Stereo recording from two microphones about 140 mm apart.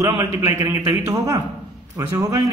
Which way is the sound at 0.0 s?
20° right (ahead or behind).